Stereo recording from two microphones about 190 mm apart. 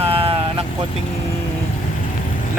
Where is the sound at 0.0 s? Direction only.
30° right (ahead or behind).